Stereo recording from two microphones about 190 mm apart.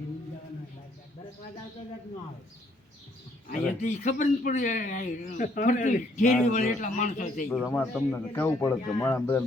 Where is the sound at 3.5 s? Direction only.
40° left (ahead or behind).